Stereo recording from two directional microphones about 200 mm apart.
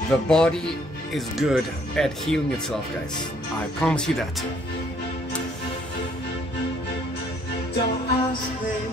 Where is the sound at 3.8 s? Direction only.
5° left (ahead or behind).